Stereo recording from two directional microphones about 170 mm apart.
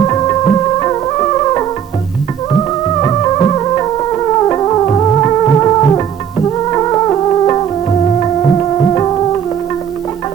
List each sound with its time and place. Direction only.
0.1 s music: 20° left (ahead or behind)
3.0 s music: 20° left (ahead or behind)